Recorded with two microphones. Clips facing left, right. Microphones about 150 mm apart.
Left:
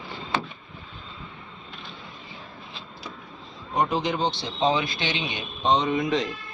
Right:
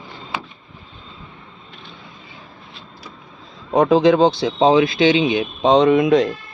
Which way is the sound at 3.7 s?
90° right.